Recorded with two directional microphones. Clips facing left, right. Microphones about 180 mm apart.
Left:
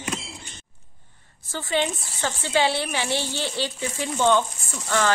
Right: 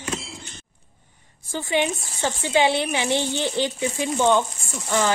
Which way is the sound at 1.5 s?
15° right (ahead or behind).